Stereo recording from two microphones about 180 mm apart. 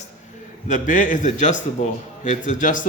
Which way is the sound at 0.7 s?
45° left (ahead or behind).